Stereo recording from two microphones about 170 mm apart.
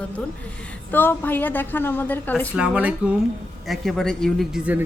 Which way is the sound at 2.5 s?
5° right (ahead or behind).